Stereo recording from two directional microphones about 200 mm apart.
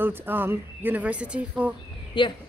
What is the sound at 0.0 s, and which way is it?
Speech, 10° right (ahead or behind).